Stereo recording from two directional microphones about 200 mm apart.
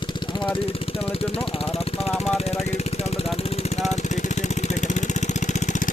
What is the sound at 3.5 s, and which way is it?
Vehicle, 30° left (ahead or behind).